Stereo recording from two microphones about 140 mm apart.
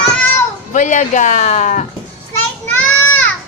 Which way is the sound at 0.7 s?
60° left (ahead or behind).